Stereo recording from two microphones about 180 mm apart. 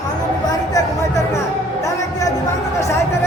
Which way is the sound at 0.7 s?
15° left (ahead or behind).